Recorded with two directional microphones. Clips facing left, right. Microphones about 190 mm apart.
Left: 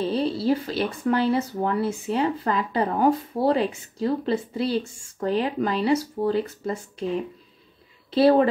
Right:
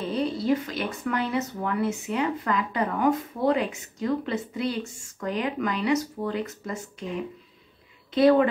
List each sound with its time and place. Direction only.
0.0 s speech: 30° left (ahead or behind)
8.1 s speech: 30° left (ahead or behind)